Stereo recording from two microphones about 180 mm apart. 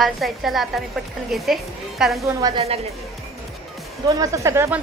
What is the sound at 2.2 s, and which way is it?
Speech, 20° right (ahead or behind).